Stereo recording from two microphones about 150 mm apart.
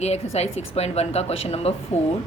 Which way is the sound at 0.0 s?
45° left (ahead or behind).